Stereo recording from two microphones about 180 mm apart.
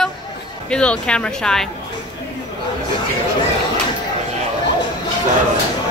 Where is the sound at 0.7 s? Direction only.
5° left (ahead or behind).